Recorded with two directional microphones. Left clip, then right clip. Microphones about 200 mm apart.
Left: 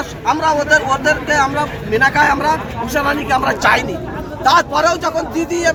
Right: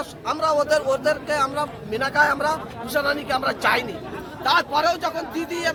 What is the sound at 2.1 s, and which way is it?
A man's voice, 20° right (ahead or behind).